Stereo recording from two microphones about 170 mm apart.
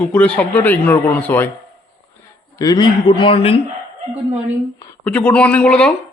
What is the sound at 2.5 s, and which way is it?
Speech, 20° left (ahead or behind).